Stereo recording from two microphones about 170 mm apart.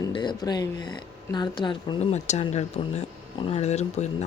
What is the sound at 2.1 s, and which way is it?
Speech, 40° left (ahead or behind).